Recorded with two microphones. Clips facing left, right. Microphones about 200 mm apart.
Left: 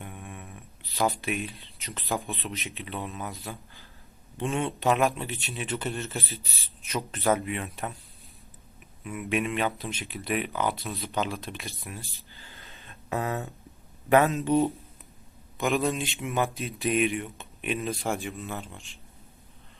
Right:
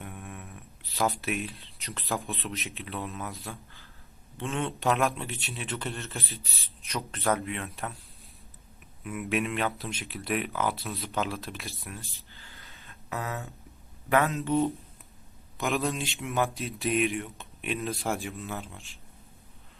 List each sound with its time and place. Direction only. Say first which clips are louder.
0.0 s speech: even; centre (ahead or behind)
4.4 s speech: left 4 dB; 15° left (ahead or behind)
4.6 s speech: left 2 dB; centre (ahead or behind)
9.0 s speech: left 1 dB; centre (ahead or behind)
12.1 s a sound: left 2 dB; 15° left (ahead or behind)
13.1 s speech: left 5 dB; 30° left (ahead or behind)
15.5 s speech: left 3 dB; centre (ahead or behind)